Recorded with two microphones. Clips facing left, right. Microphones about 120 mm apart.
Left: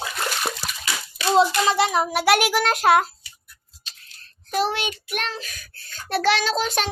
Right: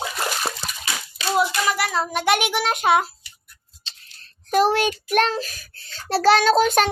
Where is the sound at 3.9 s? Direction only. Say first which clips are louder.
Right 1 dB; 30° right (ahead or behind).